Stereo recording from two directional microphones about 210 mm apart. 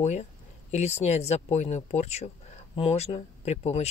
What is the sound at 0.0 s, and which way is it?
Speech, 30° left (ahead or behind).